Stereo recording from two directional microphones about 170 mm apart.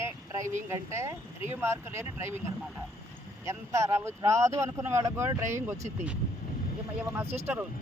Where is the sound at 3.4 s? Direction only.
15° right (ahead or behind).